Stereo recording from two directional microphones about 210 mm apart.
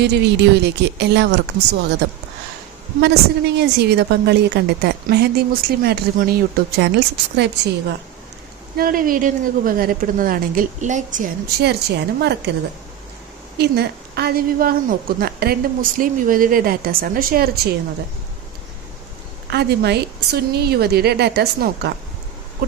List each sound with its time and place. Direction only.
0.0 s speech: 55° right (ahead or behind)
3.0 s speech: 55° right (ahead or behind)
8.8 s a woman's voice: 40° right (ahead or behind)
11.6 s speech: 50° right (ahead or behind)
13.6 s speech: 50° right (ahead or behind)
19.5 s speech: 50° right (ahead or behind)